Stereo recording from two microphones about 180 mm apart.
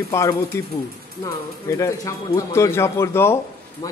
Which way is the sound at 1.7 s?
15° left (ahead or behind).